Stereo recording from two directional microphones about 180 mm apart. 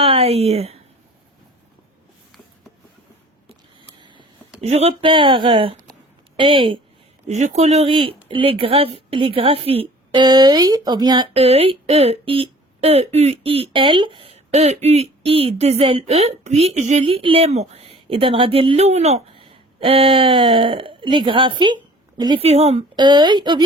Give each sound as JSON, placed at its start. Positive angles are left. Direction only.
{"t": 0.0, "sound": "speech", "side_deg": -30}
{"t": 3.8, "sound": "a sound", "side_deg": -25}
{"t": 4.6, "sound": "speech", "side_deg": -35}